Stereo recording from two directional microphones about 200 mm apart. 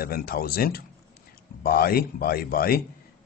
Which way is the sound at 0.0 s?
50° left (ahead or behind).